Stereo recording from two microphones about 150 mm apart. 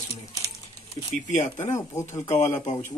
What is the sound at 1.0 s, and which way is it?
Speech, 50° left (ahead or behind).